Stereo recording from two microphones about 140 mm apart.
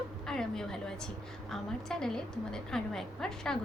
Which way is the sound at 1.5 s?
5° left (ahead or behind).